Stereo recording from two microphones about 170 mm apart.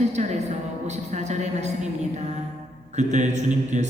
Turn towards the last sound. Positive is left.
turn(degrees=-45)  # may be behind; listen again after turning